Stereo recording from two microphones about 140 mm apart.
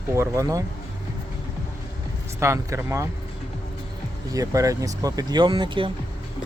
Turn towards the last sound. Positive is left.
turn(degrees=-35)  # may be behind; listen again after turning